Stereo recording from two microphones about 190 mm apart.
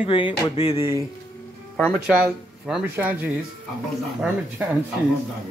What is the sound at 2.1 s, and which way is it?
Speech, 5° right (ahead or behind).